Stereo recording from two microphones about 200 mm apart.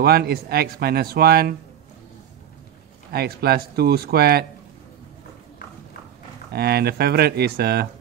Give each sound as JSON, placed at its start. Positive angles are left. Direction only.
{"t": 0.0, "sound": "speech", "side_deg": -50}
{"t": 3.1, "sound": "speech", "side_deg": -50}
{"t": 6.5, "sound": "speech", "side_deg": -50}